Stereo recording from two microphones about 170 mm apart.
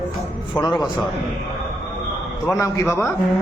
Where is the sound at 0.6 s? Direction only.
25° left (ahead or behind).